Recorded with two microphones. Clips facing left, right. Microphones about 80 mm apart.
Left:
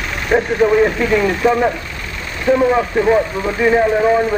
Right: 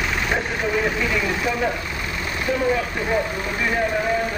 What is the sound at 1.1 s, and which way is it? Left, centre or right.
Speech, left.